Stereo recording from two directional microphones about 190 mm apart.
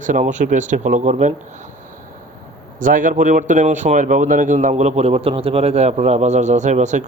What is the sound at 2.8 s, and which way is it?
Speech, 45° right (ahead or behind).